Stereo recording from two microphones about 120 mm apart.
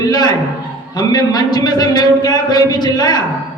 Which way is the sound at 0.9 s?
35° left (ahead or behind).